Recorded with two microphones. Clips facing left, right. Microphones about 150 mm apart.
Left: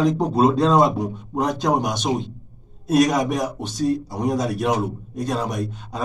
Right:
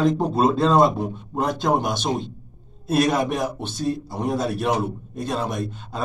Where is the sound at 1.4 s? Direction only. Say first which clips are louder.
Left 1 dB; 15° left (ahead or behind).